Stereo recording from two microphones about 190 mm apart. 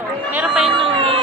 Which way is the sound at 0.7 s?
25° right (ahead or behind).